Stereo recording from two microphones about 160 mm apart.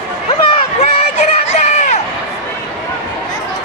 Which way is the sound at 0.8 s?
45° left (ahead or behind).